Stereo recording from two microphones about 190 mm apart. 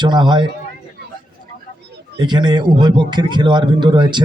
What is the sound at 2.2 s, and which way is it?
A man's voice, 25° right (ahead or behind).